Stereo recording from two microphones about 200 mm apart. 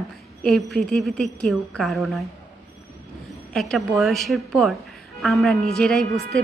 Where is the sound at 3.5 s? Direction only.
Centre (ahead or behind).